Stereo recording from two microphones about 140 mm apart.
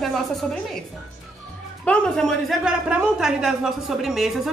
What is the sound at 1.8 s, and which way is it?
Speech, 5° left (ahead or behind).